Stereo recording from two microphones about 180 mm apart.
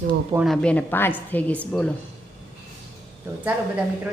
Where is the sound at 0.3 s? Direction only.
Centre (ahead or behind).